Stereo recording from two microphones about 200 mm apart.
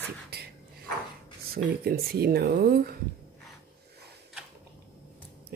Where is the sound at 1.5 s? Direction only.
50° right (ahead or behind).